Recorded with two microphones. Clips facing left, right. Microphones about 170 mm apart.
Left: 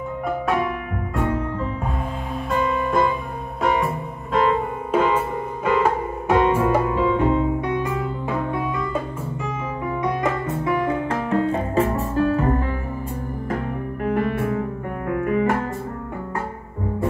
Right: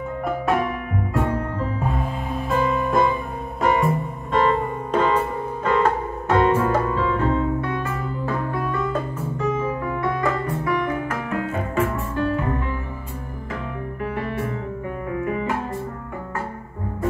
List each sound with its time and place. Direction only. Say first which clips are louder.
1.1 s music: left 1 dB; centre (ahead or behind); by 12.7 s 40° left (ahead or behind)
14.0 s music: left 5 dB; 50° left (ahead or behind)